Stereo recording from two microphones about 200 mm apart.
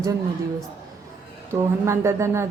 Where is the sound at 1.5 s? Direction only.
15° right (ahead or behind).